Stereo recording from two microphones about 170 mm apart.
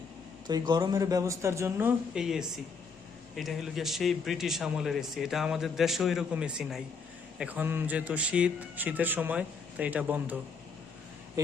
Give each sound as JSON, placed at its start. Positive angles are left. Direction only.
{"t": 0.4, "sound": "a man's voice", "side_deg": -25}